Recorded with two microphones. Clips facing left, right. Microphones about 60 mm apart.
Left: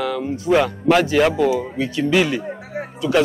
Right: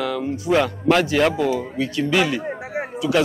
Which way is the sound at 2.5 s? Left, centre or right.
Centre.